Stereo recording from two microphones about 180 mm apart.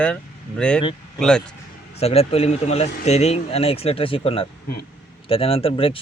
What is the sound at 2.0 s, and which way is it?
Speech, 35° left (ahead or behind).